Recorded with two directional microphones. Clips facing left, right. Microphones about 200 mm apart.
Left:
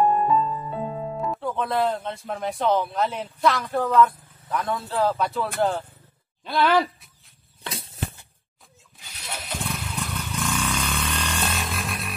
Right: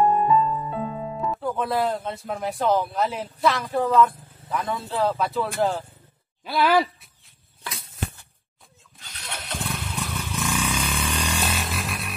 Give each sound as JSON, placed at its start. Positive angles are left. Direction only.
{"t": 0.0, "sound": "music", "side_deg": 0}
{"t": 1.1, "sound": "speech", "side_deg": 0}
{"t": 7.6, "sound": "a sound", "side_deg": 30}
{"t": 9.0, "sound": "vehicle", "side_deg": 5}